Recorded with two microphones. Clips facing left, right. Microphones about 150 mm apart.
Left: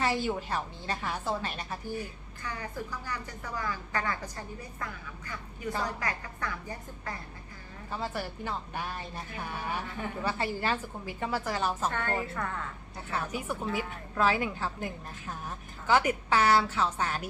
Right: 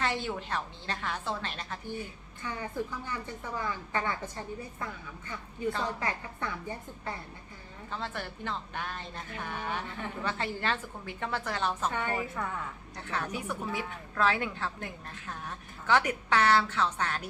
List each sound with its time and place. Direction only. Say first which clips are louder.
0.0 s a woman's voice: left 3 dB; 5° left (ahead or behind)
2.4 s a woman's voice: right 3 dB; 25° right (ahead or behind)
7.9 s a woman's voice: left 3 dB; 10° left (ahead or behind)
11.9 s a woman's voice: even; 10° right (ahead or behind)
13.0 s a woman's voice: left 1 dB; 5° left (ahead or behind)